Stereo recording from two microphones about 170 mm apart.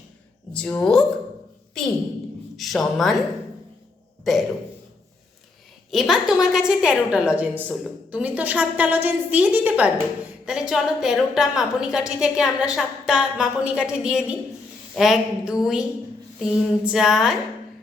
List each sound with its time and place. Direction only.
0.5 s a woman's voice: 5° left (ahead or behind)
2.6 s a woman's voice: centre (ahead or behind)
5.9 s a woman's voice: centre (ahead or behind)